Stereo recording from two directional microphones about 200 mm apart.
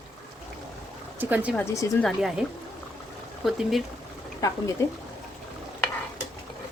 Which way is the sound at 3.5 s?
Centre (ahead or behind).